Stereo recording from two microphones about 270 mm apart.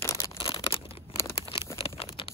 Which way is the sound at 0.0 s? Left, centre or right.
Centre.